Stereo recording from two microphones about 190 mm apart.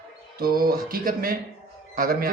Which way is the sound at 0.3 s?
50° right (ahead or behind).